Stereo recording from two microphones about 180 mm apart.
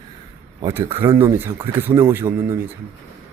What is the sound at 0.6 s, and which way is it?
A man's voice, 10° right (ahead or behind).